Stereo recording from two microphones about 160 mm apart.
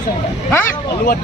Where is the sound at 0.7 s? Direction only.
60° left (ahead or behind).